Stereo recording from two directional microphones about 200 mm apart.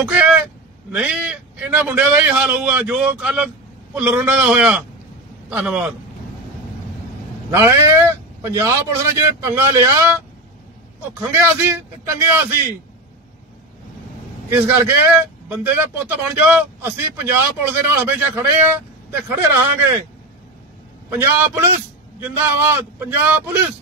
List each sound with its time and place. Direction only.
0.0 s vehicle: 5° right (ahead or behind)
0.9 s a man's voice: 5° right (ahead or behind)
7.5 s a man's voice: 15° right (ahead or behind)
11.1 s a man's voice: 10° right (ahead or behind)
14.5 s a man's voice: 15° right (ahead or behind)
21.1 s a man's voice: 10° right (ahead or behind)